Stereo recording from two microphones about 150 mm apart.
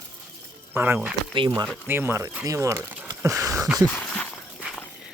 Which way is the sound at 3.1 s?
20° right (ahead or behind).